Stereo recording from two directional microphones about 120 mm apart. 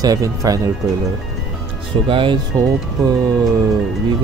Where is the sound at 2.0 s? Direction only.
45° right (ahead or behind).